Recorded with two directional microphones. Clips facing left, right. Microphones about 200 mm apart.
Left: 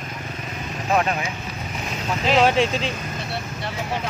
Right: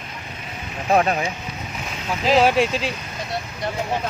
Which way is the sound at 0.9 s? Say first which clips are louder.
Right 3 dB; 40° right (ahead or behind).